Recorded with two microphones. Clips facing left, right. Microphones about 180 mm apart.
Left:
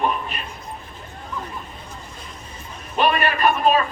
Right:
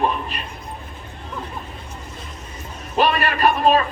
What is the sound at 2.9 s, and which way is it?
Speech, 35° right (ahead or behind).